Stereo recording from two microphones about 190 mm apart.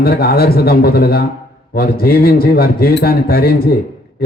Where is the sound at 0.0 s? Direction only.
55° left (ahead or behind).